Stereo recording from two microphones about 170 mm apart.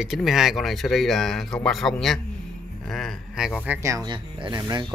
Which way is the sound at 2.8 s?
5° left (ahead or behind).